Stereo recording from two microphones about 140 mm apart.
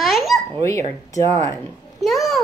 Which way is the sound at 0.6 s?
20° left (ahead or behind).